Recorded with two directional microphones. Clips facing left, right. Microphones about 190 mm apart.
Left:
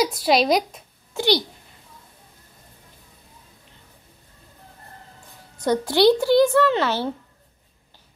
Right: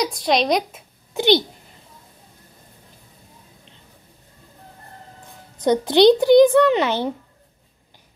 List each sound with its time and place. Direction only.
0.0 s speech: 5° left (ahead or behind)
1.1 s a child's voice: 20° right (ahead or behind)
5.6 s speech: 20° right (ahead or behind)